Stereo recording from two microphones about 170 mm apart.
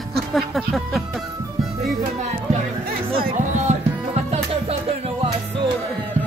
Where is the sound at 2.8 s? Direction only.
60° right (ahead or behind).